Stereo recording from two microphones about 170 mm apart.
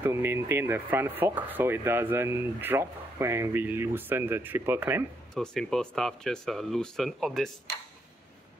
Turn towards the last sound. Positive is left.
turn(degrees=0)  # may be behind; listen again after turning